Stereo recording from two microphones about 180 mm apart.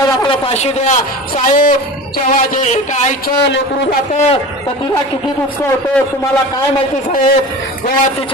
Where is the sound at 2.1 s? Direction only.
45° left (ahead or behind).